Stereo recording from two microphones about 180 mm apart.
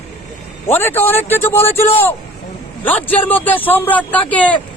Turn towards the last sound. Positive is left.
turn(degrees=10)  # may be behind; listen again after turning